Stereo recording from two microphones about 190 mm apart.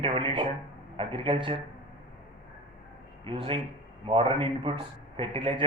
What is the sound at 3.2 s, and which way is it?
A man's voice, 25° right (ahead or behind).